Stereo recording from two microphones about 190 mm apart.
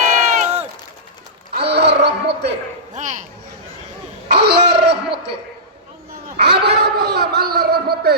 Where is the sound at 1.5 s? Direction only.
60° right (ahead or behind).